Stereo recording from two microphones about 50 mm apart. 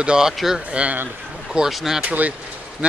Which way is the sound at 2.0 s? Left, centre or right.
Right.